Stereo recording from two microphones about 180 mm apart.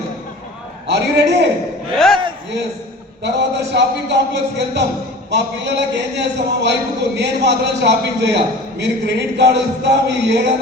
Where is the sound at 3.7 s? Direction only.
65° right (ahead or behind).